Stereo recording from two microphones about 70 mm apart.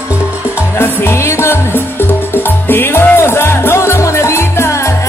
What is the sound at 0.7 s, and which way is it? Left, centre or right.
Music, left.